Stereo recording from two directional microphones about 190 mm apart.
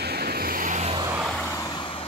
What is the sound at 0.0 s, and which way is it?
Vehicle, 55° right (ahead or behind).